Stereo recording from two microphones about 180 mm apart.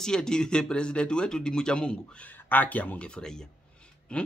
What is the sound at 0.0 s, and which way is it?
Speech, 5° left (ahead or behind).